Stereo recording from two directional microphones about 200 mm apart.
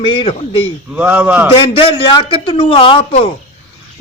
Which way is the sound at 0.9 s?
10° right (ahead or behind).